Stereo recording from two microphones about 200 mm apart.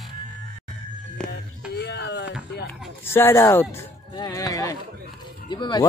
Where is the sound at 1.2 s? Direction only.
5° left (ahead or behind).